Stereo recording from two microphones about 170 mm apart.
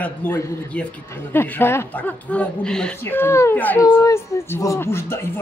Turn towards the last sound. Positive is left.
turn(degrees=15)  # may be behind; listen again after turning